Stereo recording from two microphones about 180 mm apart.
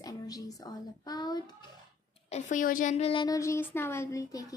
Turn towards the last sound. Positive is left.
turn(degrees=15)  # may be behind; listen again after turning